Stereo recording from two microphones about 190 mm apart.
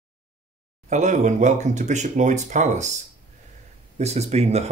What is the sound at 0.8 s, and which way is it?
Speech, 40° right (ahead or behind).